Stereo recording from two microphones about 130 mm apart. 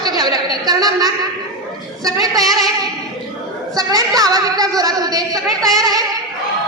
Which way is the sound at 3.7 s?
30° right (ahead or behind).